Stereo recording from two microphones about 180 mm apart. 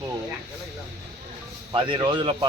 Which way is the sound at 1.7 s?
30° right (ahead or behind).